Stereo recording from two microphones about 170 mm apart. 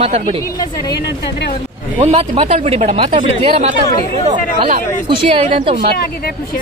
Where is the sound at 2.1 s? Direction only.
40° right (ahead or behind).